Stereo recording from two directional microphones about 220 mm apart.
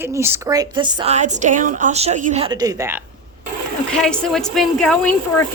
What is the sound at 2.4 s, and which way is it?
Speech, 15° right (ahead or behind).